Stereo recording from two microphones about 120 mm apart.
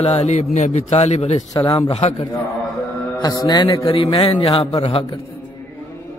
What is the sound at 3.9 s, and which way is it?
A man's voice, 50° left (ahead or behind).